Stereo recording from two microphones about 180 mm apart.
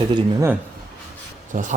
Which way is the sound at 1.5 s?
45° right (ahead or behind).